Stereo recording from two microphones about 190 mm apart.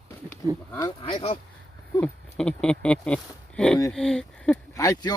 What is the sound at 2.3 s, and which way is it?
Speech, 5° left (ahead or behind).